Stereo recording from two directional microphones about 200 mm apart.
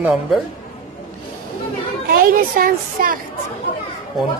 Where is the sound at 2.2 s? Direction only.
45° right (ahead or behind).